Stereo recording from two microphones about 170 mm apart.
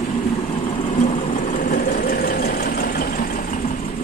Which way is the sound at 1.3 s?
55° left (ahead or behind).